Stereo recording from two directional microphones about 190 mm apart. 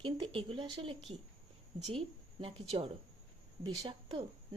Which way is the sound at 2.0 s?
30° right (ahead or behind).